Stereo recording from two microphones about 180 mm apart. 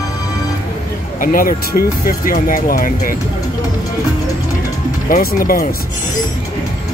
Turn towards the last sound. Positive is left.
turn(degrees=55)  # may be behind; listen again after turning